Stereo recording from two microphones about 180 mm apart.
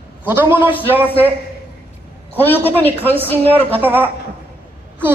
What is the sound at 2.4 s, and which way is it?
Speech, 10° left (ahead or behind).